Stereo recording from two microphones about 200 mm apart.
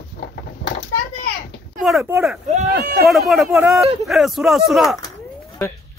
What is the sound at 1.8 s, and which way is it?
Speech, centre (ahead or behind).